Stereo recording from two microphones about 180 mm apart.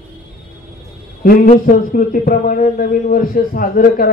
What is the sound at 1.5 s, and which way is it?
Speech, 50° left (ahead or behind).